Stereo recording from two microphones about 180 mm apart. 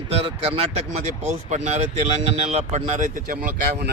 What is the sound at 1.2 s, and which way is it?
A man's voice, 40° right (ahead or behind).